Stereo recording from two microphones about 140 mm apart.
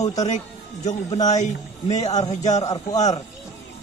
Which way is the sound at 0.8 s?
55° left (ahead or behind).